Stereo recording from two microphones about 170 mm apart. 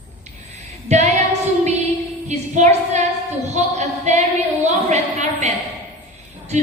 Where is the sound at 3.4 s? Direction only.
40° right (ahead or behind).